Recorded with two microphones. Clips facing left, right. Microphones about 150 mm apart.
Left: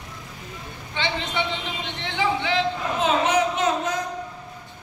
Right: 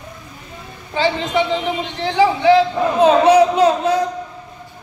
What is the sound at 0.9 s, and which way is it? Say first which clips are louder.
A man's voice: right 9 dB; 35° right (ahead or behind).